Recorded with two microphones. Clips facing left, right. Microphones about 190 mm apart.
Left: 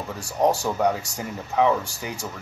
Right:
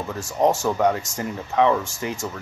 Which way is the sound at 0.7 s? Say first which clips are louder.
Right 2 dB; centre (ahead or behind).